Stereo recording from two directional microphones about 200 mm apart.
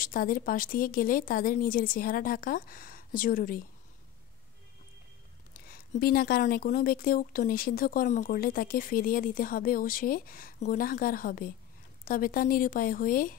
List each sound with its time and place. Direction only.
0.0 s speech: 45° left (ahead or behind)
5.5 s speech: 45° left (ahead or behind)